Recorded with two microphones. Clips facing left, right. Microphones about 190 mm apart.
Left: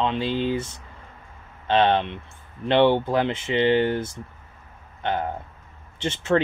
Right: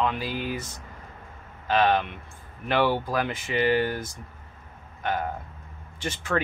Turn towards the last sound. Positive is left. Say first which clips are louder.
# left 6 dB
turn(degrees=25)  # may be behind; listen again after turning